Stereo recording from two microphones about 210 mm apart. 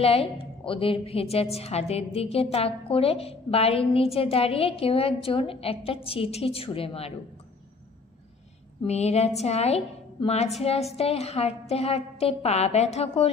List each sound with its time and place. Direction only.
0.0 s a woman's voice: 25° left (ahead or behind)
8.8 s a woman's voice: 30° left (ahead or behind)